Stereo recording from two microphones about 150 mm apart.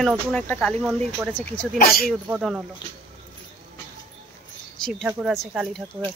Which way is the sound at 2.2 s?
5° right (ahead or behind).